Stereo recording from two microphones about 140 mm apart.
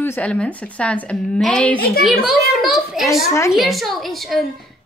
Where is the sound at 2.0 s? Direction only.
Centre (ahead or behind).